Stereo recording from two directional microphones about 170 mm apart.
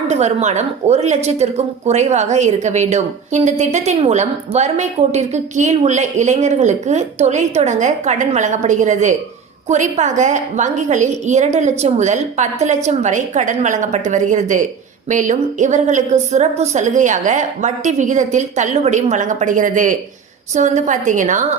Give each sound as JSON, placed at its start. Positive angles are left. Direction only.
{"t": 0.1, "sound": "speech", "side_deg": -40}